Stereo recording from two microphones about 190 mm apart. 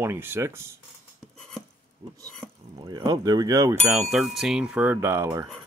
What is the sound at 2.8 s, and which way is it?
Speech, 20° right (ahead or behind).